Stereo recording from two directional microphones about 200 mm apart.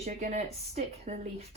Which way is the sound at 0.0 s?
35° right (ahead or behind).